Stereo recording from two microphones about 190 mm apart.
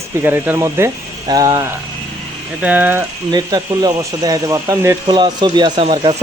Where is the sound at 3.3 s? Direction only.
20° right (ahead or behind).